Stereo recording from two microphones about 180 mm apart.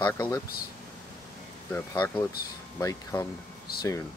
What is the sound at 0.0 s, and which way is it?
Speech, 15° left (ahead or behind).